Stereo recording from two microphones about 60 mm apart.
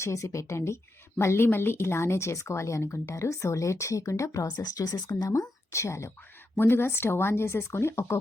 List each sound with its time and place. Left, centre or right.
0.0 s speech: left
6.6 s speech: left